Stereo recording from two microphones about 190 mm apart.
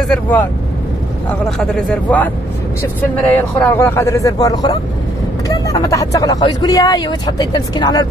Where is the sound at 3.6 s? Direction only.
10° left (ahead or behind).